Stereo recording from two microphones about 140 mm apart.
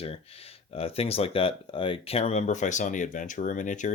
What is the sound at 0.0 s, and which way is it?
Speech, 45° left (ahead or behind).